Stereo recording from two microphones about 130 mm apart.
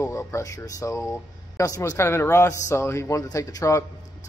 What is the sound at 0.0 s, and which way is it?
Speech, 20° left (ahead or behind).